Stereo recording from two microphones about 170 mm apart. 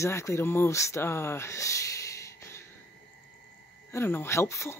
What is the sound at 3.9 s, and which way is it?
Speech, 15° left (ahead or behind).